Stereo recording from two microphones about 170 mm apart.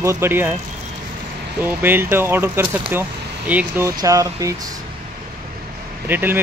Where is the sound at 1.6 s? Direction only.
10° right (ahead or behind).